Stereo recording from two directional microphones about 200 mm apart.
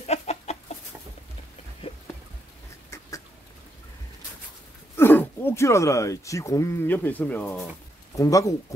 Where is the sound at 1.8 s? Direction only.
30° left (ahead or behind).